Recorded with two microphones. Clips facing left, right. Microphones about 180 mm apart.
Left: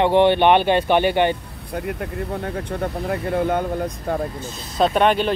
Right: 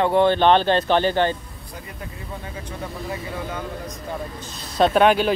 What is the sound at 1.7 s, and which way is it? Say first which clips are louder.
Speech: left 11 dB; 65° left (ahead or behind).